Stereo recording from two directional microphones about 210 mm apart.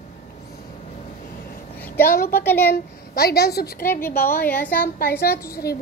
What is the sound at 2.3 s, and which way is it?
Child singing, 10° left (ahead or behind).